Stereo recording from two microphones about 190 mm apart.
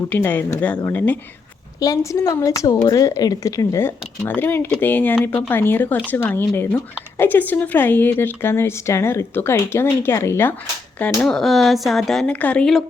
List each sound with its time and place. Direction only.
0.1 s a woman's voice: 10° left (ahead or behind)
11.0 s speech: 5° left (ahead or behind)